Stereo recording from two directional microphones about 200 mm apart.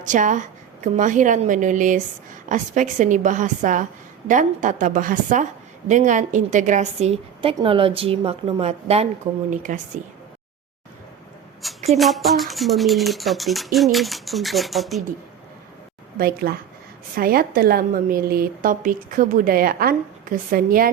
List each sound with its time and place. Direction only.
0.0 s a woman's voice: 40° right (ahead or behind)
11.6 s speech: centre (ahead or behind)
16.1 s a woman's voice: 50° right (ahead or behind)